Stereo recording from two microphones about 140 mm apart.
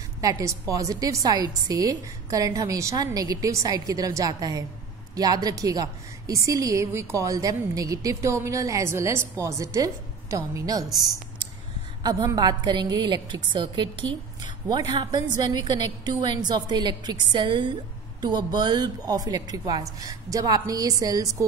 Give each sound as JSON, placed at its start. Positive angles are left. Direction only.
{"t": 0.2, "sound": "a woman's voice", "side_deg": -25}